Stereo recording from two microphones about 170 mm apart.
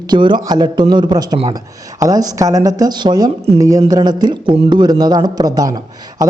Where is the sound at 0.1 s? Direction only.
25° right (ahead or behind).